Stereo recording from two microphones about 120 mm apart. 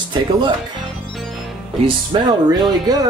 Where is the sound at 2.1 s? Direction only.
35° right (ahead or behind).